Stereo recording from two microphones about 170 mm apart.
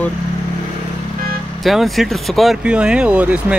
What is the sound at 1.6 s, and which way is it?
Speech, centre (ahead or behind).